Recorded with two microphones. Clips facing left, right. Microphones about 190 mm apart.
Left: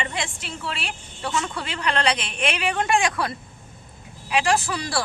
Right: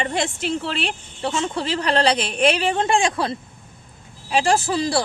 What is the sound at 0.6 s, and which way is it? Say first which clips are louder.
A woman's voice: right 6 dB; 30° right (ahead or behind).